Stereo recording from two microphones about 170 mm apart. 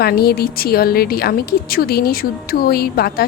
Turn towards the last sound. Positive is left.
turn(degrees=65)  # may be behind; listen again after turning